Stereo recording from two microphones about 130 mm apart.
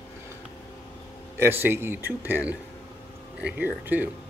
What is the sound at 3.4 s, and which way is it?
Speech, 15° right (ahead or behind).